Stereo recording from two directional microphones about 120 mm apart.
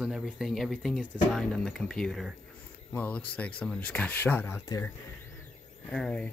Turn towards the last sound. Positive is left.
turn(degrees=10)  # may be behind; listen again after turning